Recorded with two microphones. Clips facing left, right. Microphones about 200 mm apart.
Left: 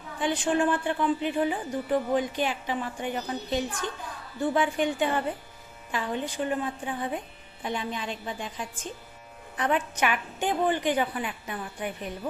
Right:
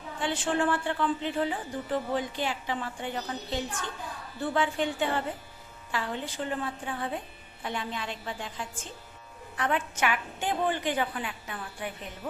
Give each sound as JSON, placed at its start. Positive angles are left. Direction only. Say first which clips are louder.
{"t": 0.2, "sound": "a woman's voice", "louder": "left 3 dB", "side_deg": 15}